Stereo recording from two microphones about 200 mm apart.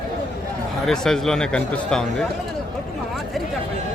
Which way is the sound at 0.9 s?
Centre (ahead or behind).